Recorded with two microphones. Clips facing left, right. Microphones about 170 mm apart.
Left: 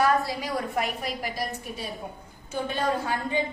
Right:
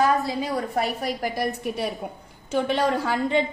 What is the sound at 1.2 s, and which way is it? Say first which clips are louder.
Speech: right 6 dB; 55° right (ahead or behind).